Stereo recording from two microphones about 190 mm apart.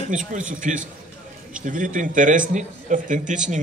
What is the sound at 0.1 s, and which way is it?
A man's voice, 40° right (ahead or behind).